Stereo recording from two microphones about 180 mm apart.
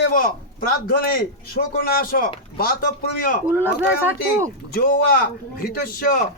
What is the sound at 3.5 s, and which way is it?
Speech, 10° right (ahead or behind).